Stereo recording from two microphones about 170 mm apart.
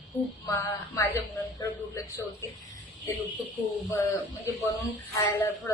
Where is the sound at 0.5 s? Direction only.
15° left (ahead or behind).